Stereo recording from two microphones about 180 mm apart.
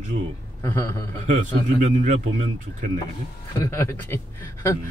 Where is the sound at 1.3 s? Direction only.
45° right (ahead or behind).